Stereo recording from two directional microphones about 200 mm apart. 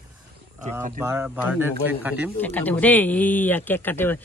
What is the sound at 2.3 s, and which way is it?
Speech, 10° left (ahead or behind).